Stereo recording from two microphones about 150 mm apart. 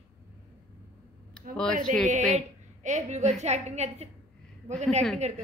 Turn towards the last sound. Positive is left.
turn(degrees=-50)  # may be behind; listen again after turning